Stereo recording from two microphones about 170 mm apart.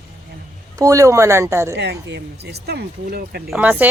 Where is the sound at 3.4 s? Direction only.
10° right (ahead or behind).